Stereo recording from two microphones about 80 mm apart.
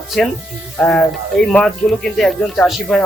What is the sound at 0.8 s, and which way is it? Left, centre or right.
Speech, centre.